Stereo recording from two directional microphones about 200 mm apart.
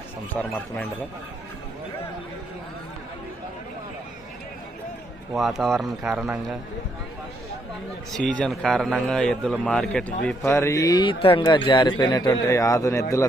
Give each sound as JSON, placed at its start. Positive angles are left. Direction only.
{"t": 0.3, "sound": "a man's voice", "side_deg": 5}
{"t": 5.3, "sound": "a man's voice", "side_deg": 0}
{"t": 8.1, "sound": "a man's voice", "side_deg": 5}